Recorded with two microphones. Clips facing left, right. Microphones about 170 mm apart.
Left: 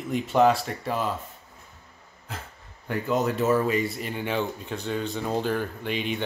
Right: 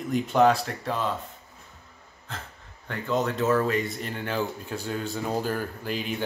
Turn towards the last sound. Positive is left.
turn(degrees=0)  # may be behind; listen again after turning